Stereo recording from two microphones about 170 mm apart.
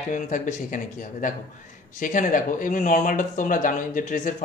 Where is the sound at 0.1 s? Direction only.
50° left (ahead or behind).